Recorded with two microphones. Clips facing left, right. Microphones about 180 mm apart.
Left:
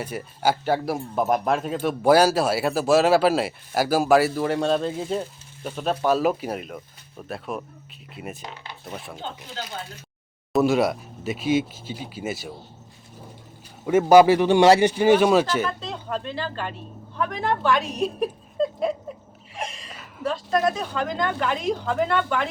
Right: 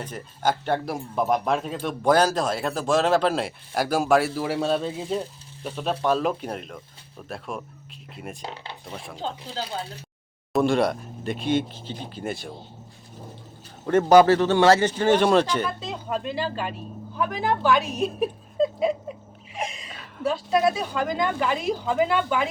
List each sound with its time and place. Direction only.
0.0 s speech: 10° left (ahead or behind)
9.1 s speech: 30° right (ahead or behind)
10.5 s speech: 5° left (ahead or behind)
13.8 s a man's voice: 10° left (ahead or behind)
15.8 s speech: 5° right (ahead or behind)
19.5 s gasp: 5° right (ahead or behind)
20.2 s speech: 5° right (ahead or behind)